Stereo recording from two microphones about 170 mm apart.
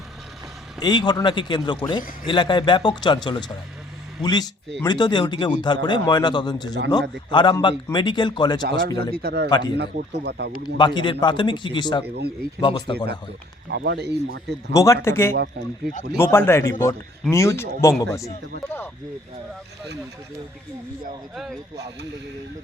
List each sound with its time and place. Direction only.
0.8 s speech: 25° left (ahead or behind)
9.1 s speech: 65° right (ahead or behind)
9.5 s speech: 25° left (ahead or behind)
9.7 s speech: 80° right
10.8 s speech: 25° left (ahead or behind)
12.0 s speech: 70° right (ahead or behind)
12.5 s speech: 25° left (ahead or behind)
13.7 s speech: 80° right
14.7 s a man's voice: 20° left (ahead or behind)
15.4 s speech: 65° right (ahead or behind)
16.1 s a man's voice: 15° left (ahead or behind)